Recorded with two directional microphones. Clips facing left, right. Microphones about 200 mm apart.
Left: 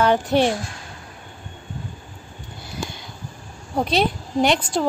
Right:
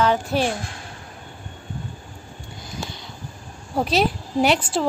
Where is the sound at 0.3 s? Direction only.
20° left (ahead or behind).